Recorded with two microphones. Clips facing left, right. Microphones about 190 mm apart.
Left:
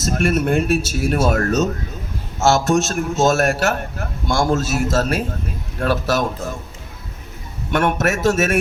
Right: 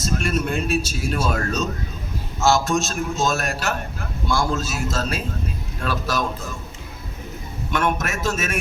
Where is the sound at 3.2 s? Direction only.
70° left (ahead or behind).